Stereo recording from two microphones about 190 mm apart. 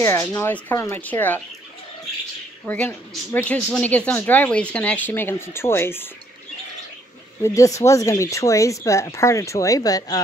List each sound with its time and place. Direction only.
0.0 s speech: 10° left (ahead or behind)
2.6 s speech: 10° left (ahead or behind)
7.4 s speech: 15° left (ahead or behind)